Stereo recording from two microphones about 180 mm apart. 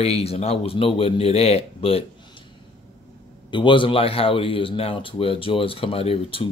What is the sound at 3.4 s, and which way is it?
Speech, 25° left (ahead or behind).